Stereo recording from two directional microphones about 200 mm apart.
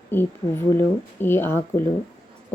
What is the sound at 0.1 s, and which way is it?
Speech, 10° left (ahead or behind).